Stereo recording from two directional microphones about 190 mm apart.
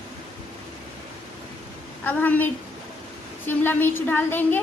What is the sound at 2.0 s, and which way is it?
Speech, 10° left (ahead or behind).